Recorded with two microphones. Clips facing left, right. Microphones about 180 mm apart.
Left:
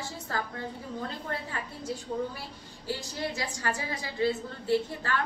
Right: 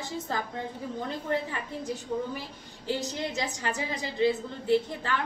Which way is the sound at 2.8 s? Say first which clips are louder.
Right 3 dB; 20° right (ahead or behind).